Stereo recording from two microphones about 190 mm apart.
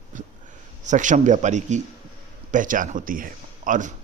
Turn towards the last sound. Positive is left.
turn(degrees=-40)  # may be behind; listen again after turning